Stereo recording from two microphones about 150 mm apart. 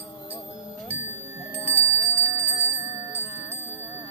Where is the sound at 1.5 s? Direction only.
15° right (ahead or behind).